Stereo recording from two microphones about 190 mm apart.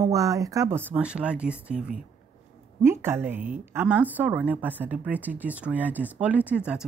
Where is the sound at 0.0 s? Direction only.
15° right (ahead or behind).